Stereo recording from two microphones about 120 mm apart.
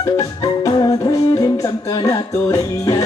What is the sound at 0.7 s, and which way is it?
Music, 35° left (ahead or behind).